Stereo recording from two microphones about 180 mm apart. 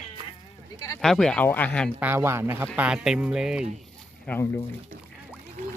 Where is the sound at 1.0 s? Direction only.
5° left (ahead or behind).